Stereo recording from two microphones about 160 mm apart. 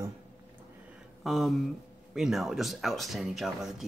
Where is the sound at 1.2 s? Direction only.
Centre (ahead or behind).